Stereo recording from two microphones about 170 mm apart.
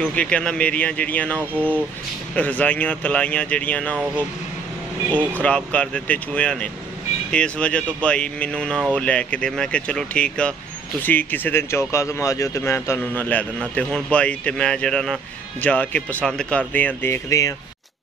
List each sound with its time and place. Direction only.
0.0 s speech: 5° left (ahead or behind)
5.1 s speech: 10° left (ahead or behind)